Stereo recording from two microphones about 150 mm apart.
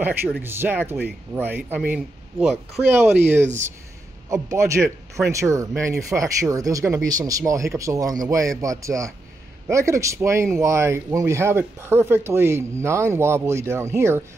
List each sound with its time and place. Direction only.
0.0 s a man's voice: 15° right (ahead or behind)